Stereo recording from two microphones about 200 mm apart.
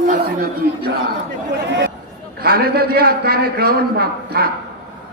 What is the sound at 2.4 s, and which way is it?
A man's voice, 50° right (ahead or behind).